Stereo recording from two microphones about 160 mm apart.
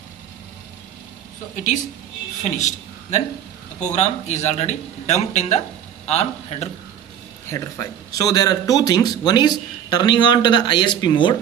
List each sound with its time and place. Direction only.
2.4 s a man's voice: 45° left (ahead or behind)
7.4 s speech: 20° left (ahead or behind)